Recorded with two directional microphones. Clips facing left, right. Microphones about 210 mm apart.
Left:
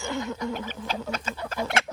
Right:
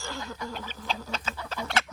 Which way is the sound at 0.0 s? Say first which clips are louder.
Left 7 dB; 20° left (ahead or behind).